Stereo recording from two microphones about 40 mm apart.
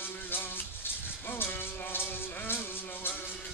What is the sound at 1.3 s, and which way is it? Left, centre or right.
Music, left.